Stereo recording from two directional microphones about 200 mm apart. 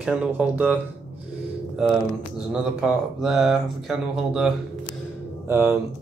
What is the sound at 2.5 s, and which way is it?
Speech, 5° right (ahead or behind).